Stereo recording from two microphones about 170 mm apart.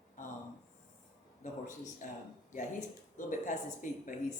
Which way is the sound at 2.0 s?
50° left (ahead or behind).